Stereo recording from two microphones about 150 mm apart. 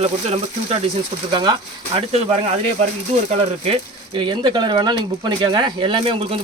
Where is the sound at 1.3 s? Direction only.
30° right (ahead or behind).